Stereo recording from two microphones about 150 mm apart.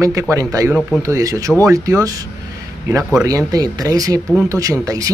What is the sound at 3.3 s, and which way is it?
Speech, 25° right (ahead or behind).